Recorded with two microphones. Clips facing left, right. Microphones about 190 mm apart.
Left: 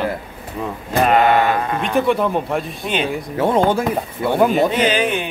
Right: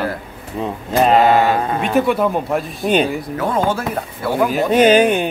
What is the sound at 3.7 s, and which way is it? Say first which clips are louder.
Speech: left 3 dB; 15° left (ahead or behind).